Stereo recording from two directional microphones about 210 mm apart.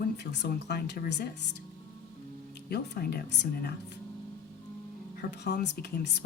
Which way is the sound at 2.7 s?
45° left (ahead or behind).